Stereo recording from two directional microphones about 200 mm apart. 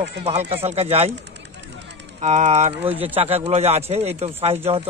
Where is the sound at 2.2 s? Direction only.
35° right (ahead or behind).